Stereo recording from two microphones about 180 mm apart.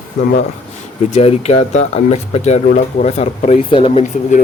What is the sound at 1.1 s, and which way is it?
Speech, 35° left (ahead or behind).